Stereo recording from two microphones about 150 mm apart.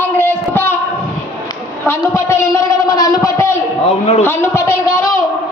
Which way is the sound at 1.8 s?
15° left (ahead or behind).